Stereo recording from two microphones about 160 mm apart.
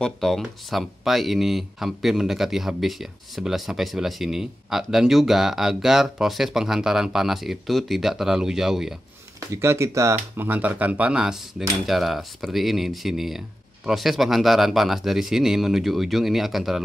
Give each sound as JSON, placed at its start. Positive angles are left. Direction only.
{"t": 0.0, "sound": "speech", "side_deg": 0}
{"t": 9.5, "sound": "speech", "side_deg": -15}